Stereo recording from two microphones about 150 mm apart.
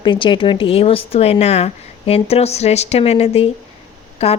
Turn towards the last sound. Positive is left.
turn(degrees=40)  # may be behind; listen again after turning